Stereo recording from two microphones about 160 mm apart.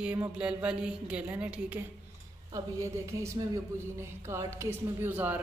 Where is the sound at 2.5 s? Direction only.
20° right (ahead or behind).